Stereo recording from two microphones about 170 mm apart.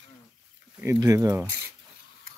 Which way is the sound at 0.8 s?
15° right (ahead or behind).